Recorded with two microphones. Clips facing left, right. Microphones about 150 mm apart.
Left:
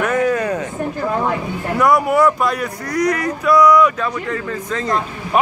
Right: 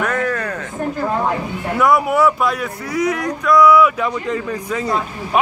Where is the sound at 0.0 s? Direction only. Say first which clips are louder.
Left 3 dB; 15° left (ahead or behind).